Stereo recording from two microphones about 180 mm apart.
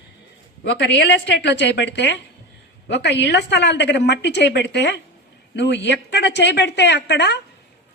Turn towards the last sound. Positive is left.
turn(degrees=75)  # may be behind; listen again after turning